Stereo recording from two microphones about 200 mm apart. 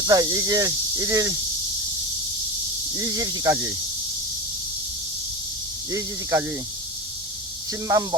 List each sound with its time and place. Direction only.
0.1 s speech: 15° right (ahead or behind)
2.9 s speech: 15° right (ahead or behind)
5.9 s speech: 15° right (ahead or behind)
7.7 s speech: 15° right (ahead or behind)